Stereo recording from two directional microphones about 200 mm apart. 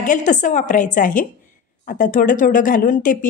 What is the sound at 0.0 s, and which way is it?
A woman's voice, 40° left (ahead or behind).